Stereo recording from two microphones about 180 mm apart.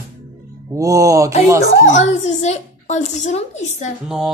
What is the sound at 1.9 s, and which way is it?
A child's voice, 40° left (ahead or behind).